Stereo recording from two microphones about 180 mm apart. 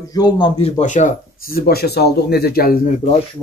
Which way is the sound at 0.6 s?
40° left (ahead or behind).